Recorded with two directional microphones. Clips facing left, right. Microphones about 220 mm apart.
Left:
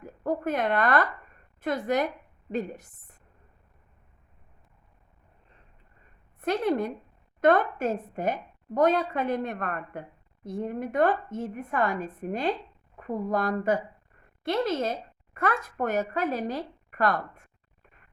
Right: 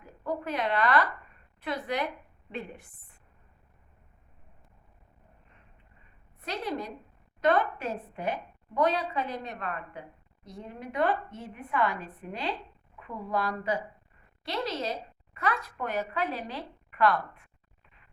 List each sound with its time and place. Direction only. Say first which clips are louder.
0.0 s a woman's voice: left 5 dB; 50° left (ahead or behind)
6.4 s a woman's voice: left 8 dB; 55° left (ahead or behind)